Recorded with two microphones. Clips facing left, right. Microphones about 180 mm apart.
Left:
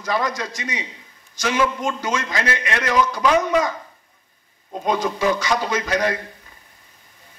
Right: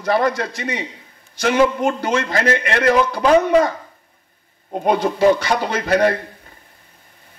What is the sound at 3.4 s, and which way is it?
Speech, 55° right (ahead or behind).